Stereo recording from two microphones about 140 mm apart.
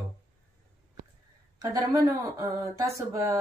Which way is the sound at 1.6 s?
25° right (ahead or behind).